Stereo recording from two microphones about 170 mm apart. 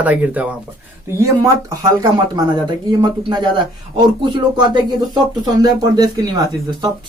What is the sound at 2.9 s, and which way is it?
Speech, 25° right (ahead or behind).